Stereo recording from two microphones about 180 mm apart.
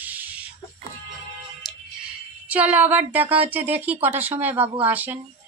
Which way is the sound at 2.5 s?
10° right (ahead or behind).